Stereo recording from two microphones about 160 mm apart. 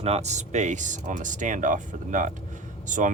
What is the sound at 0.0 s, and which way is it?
Speech, 40° right (ahead or behind).